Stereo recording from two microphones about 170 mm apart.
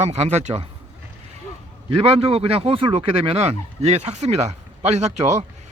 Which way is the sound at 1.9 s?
35° right (ahead or behind).